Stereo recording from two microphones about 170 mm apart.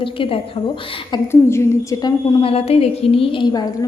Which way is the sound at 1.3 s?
15° left (ahead or behind).